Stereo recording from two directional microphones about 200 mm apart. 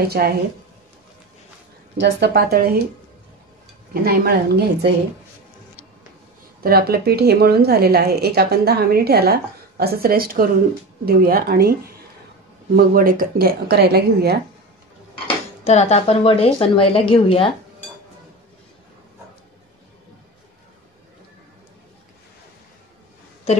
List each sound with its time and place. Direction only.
0.1 s a woman's voice: 50° right (ahead or behind)
2.0 s a woman's voice: 55° right (ahead or behind)
3.9 s a woman's voice: 50° right (ahead or behind)
6.6 s a woman's voice: 50° right (ahead or behind)
15.2 s speech: 30° left (ahead or behind)
23.5 s a woman's voice: 30° left (ahead or behind)